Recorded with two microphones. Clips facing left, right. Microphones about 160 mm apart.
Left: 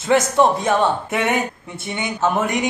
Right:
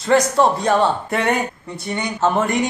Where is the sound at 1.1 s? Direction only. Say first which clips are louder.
Right 1 dB; 5° left (ahead or behind).